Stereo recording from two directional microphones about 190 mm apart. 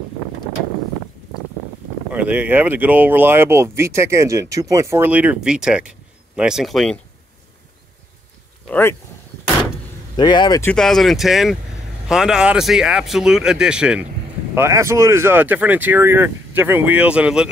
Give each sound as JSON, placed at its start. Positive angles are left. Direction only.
{"t": 2.1, "sound": "speech", "side_deg": -5}
{"t": 8.6, "sound": "speech", "side_deg": 10}
{"t": 10.1, "sound": "speech", "side_deg": 20}
{"t": 10.6, "sound": "speech", "side_deg": 5}